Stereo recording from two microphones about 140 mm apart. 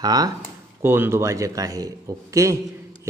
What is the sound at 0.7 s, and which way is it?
A man's voice, 15° right (ahead or behind).